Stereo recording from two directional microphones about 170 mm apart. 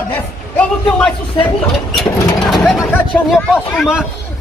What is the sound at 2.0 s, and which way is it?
Vehicle, 20° left (ahead or behind).